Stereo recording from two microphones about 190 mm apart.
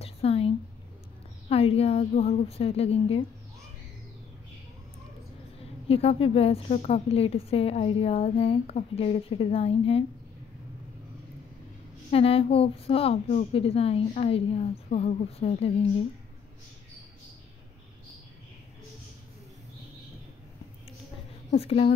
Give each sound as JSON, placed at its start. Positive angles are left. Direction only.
{"t": 0.0, "sound": "a sound", "side_deg": 30}
{"t": 1.5, "sound": "a woman's voice", "side_deg": 30}
{"t": 5.9, "sound": "a woman's voice", "side_deg": 30}
{"t": 12.1, "sound": "a woman's voice", "side_deg": 30}
{"t": 21.5, "sound": "a woman's voice", "side_deg": 30}